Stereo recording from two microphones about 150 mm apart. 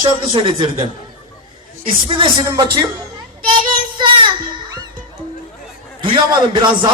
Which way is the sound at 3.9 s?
30° right (ahead or behind).